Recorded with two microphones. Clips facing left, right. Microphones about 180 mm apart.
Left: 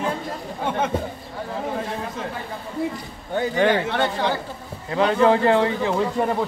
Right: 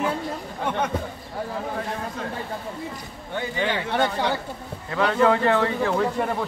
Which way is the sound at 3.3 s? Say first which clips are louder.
Left 7 dB; 45° left (ahead or behind).